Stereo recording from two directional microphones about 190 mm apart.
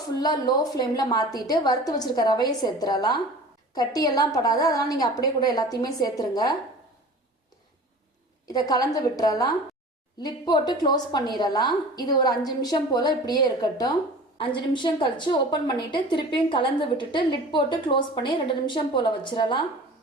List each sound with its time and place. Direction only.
0.2 s a woman's voice: 20° left (ahead or behind)
8.4 s a woman's voice: 20° left (ahead or behind)